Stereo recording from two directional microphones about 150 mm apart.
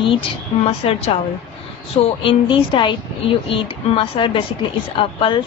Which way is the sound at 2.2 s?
35° left (ahead or behind).